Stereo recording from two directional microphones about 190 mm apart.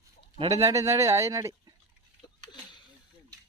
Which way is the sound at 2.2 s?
25° left (ahead or behind).